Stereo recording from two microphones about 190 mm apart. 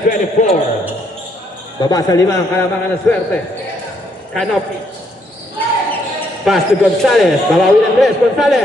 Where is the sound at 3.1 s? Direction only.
5° left (ahead or behind).